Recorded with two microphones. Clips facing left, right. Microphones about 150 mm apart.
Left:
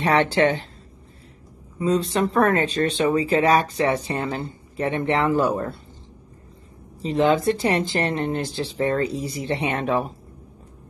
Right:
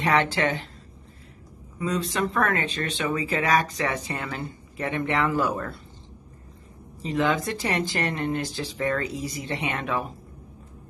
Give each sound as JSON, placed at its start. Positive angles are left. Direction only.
{"t": 0.0, "sound": "speech", "side_deg": 30}
{"t": 1.8, "sound": "speech", "side_deg": 30}
{"t": 7.0, "sound": "speech", "side_deg": 30}